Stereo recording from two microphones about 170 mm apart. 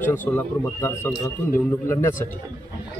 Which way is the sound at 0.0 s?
10° left (ahead or behind).